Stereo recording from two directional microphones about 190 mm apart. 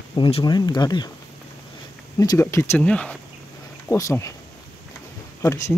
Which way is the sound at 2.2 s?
15° left (ahead or behind).